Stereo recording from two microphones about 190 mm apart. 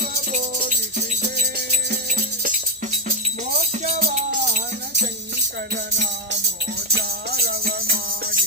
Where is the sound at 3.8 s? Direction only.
35° right (ahead or behind).